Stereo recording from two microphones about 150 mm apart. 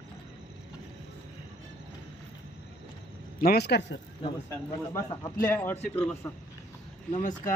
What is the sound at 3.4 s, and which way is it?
Speech, 85° left.